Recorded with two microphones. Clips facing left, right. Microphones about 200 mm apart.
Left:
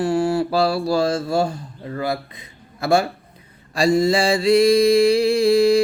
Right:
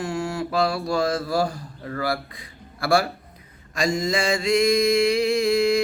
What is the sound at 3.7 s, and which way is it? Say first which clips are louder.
Mantra: left 7 dB; 35° left (ahead or behind).